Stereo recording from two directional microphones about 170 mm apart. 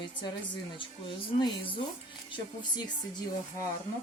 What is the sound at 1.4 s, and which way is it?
Speech, 30° left (ahead or behind).